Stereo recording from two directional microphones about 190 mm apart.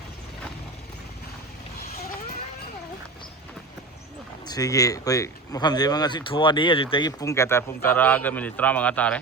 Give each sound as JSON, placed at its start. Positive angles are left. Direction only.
{"t": 4.4, "sound": "speech", "side_deg": 20}